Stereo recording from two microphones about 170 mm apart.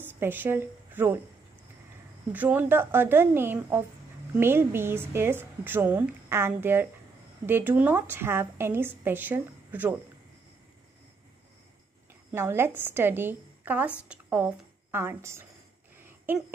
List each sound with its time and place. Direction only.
0.0 s a woman's voice: 10° right (ahead or behind)
2.3 s a woman's voice: 10° right (ahead or behind)
12.3 s a woman's voice: 15° right (ahead or behind)
16.0 s a sound: 10° right (ahead or behind)